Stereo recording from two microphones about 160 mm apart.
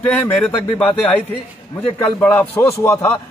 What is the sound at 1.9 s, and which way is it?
A man's voice, 10° left (ahead or behind).